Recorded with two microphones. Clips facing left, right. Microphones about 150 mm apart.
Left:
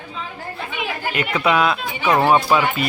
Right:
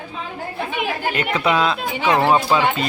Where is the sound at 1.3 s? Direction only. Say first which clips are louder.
Left 2 dB; 25° right (ahead or behind).